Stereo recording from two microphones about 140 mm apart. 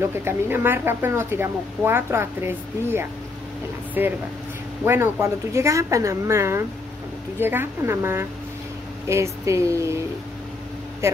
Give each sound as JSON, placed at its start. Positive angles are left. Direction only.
{"t": 0.0, "sound": "speech", "side_deg": -15}